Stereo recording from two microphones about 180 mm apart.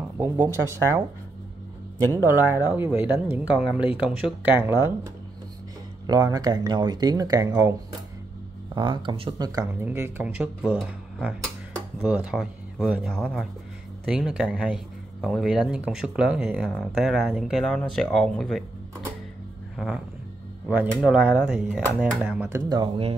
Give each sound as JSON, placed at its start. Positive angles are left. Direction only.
{"t": 0.2, "sound": "speech", "side_deg": -15}
{"t": 2.2, "sound": "speech", "side_deg": -10}
{"t": 6.0, "sound": "speech", "side_deg": -20}
{"t": 8.7, "sound": "speech", "side_deg": -25}
{"t": 9.6, "sound": "speech", "side_deg": -15}
{"t": 19.8, "sound": "speech", "side_deg": 0}
{"t": 22.7, "sound": "speech", "side_deg": -20}